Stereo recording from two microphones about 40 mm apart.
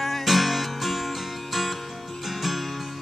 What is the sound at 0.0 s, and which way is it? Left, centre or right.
Music, centre.